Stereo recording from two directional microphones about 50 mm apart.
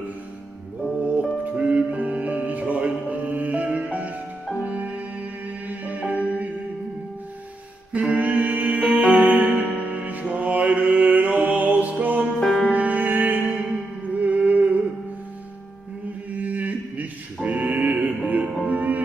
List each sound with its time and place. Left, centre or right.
1.4 s music: right
7.9 s music: right
12.4 s music: centre
12.6 s music: right
16.3 s music: right